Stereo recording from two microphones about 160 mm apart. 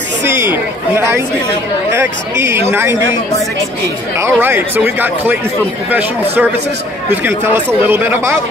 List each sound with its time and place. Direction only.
0.2 s speech: 15° right (ahead or behind)
4.2 s speech: 15° right (ahead or behind)